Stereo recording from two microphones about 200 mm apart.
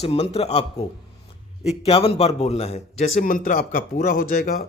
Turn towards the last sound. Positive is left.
turn(degrees=45)  # may be behind; listen again after turning